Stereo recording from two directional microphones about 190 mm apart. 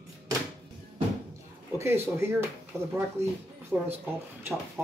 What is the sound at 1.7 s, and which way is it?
Speech, 15° right (ahead or behind).